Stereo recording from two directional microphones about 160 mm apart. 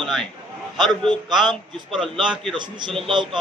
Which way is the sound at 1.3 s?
Centre (ahead or behind).